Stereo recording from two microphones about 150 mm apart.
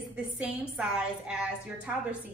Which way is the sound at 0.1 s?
5° right (ahead or behind).